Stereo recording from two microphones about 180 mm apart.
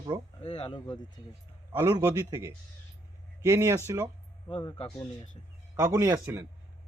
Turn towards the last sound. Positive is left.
turn(degrees=-15)  # may be behind; listen again after turning